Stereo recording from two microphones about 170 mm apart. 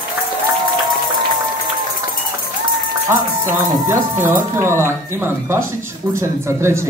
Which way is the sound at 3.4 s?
15° right (ahead or behind).